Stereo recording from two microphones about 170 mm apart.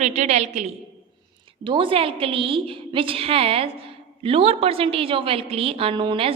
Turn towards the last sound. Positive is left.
turn(degrees=-30)  # may be behind; listen again after turning